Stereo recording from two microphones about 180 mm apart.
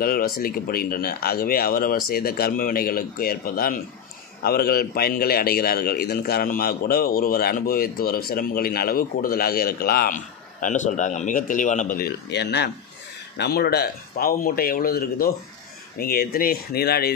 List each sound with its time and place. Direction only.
0.0 s a man's voice: 55° left (ahead or behind)
12.3 s a man's voice: 70° left (ahead or behind)